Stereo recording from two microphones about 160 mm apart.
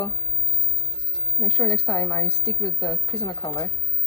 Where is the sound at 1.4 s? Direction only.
25° left (ahead or behind).